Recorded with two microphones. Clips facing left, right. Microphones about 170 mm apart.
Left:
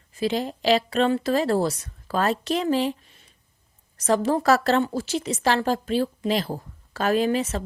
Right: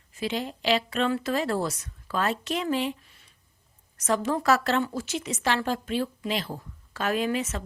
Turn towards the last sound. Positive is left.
turn(degrees=35)  # may be behind; listen again after turning